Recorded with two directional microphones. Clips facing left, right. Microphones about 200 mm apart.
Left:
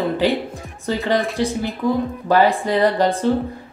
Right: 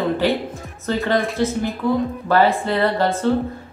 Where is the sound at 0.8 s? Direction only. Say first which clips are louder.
Even; 15° left (ahead or behind).